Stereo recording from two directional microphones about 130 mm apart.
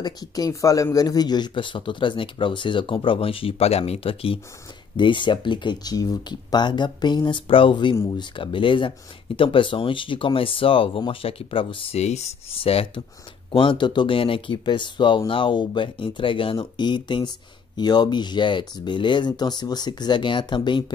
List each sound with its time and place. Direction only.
0.0 s speech: 30° left (ahead or behind)
12.0 s speech: 60° left (ahead or behind); by 20.8 s 35° left (ahead or behind)